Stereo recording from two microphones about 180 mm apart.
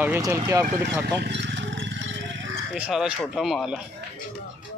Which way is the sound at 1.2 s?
75° right (ahead or behind).